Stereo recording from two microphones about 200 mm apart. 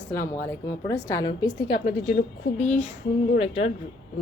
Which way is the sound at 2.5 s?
35° left (ahead or behind).